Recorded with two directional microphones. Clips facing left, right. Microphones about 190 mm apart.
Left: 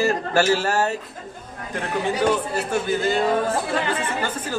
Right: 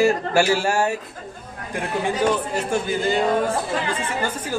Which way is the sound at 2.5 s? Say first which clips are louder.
Even; 10° right (ahead or behind).